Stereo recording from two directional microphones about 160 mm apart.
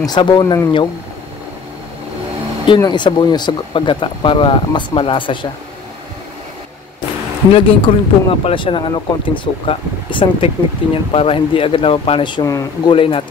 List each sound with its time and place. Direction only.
0.0 s speech: 25° left (ahead or behind)
2.6 s speech: 30° left (ahead or behind)
7.5 s speech: 35° left (ahead or behind)